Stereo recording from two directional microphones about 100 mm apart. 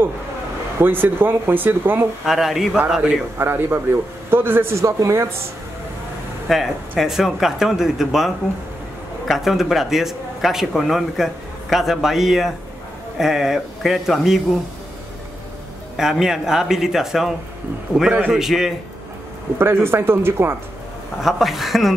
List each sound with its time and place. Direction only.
0.7 s a man's voice: 20° right (ahead or behind)
2.2 s a man's voice: centre (ahead or behind); by 5.3 s 30° right (ahead or behind)
6.5 s a man's voice: centre (ahead or behind)
9.3 s a man's voice: 5° right (ahead or behind)
16.0 s a man's voice: 5° right (ahead or behind)
18.3 s a man's voice: 5° right (ahead or behind)
19.6 s a man's voice: 25° right (ahead or behind)
21.2 s a man's voice: centre (ahead or behind)